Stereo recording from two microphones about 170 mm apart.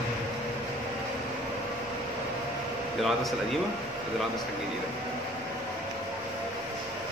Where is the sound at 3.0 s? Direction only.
Centre (ahead or behind).